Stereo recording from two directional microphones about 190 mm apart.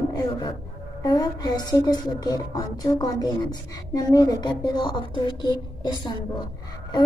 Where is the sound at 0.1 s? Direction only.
20° left (ahead or behind).